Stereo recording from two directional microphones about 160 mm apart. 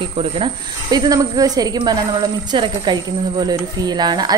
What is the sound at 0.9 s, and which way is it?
A woman's voice, 25° right (ahead or behind).